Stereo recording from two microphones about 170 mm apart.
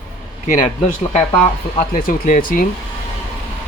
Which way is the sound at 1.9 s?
50° left (ahead or behind).